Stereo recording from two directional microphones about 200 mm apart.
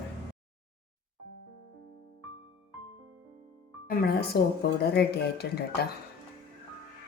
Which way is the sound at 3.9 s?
50° left (ahead or behind).